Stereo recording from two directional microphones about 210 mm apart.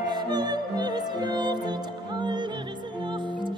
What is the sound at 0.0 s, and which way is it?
Music, 20° right (ahead or behind).